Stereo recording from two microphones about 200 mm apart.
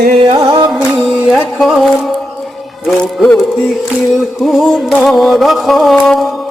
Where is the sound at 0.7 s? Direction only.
Centre (ahead or behind).